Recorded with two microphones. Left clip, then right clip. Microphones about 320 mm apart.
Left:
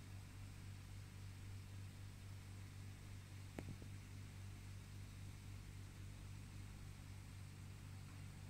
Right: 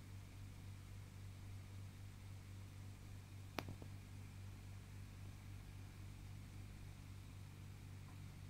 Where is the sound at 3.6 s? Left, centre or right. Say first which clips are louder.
Right 7 dB; right.